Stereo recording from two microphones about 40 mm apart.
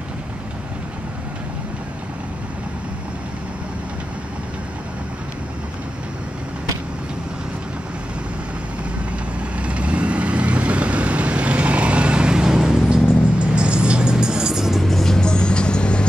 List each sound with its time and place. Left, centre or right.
9.6 s vehicle: right
13.4 s music: right
14.8 s music: centre
15.1 s vehicle: left